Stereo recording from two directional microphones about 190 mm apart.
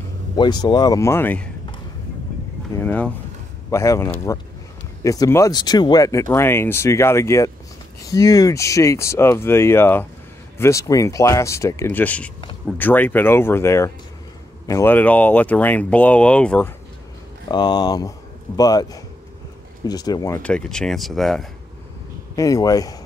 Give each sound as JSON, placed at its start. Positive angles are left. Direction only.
{"t": 0.4, "sound": "speech", "side_deg": 20}
{"t": 2.7, "sound": "speech", "side_deg": 10}
{"t": 17.5, "sound": "speech", "side_deg": 20}
{"t": 22.3, "sound": "speech", "side_deg": 20}